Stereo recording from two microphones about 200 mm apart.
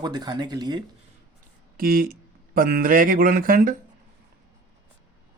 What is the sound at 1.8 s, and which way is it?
Speech, 45° right (ahead or behind).